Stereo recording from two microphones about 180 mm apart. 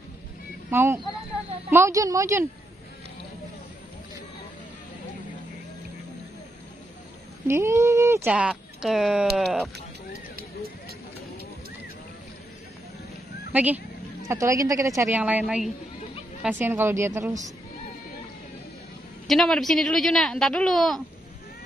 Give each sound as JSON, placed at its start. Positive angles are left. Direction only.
{"t": 0.7, "sound": "speech", "side_deg": -15}
{"t": 7.4, "sound": "speech", "side_deg": -15}
{"t": 13.5, "sound": "speech", "side_deg": -10}
{"t": 19.2, "sound": "speech", "side_deg": 0}